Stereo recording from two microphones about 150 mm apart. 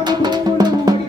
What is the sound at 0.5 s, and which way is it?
Music, 25° right (ahead or behind).